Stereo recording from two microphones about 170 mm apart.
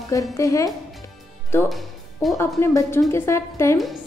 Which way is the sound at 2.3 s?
15° left (ahead or behind).